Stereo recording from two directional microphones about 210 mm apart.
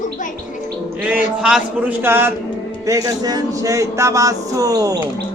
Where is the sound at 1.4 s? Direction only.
5° right (ahead or behind).